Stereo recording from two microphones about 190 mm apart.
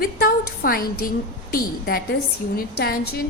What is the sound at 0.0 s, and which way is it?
A woman's voice, 50° left (ahead or behind).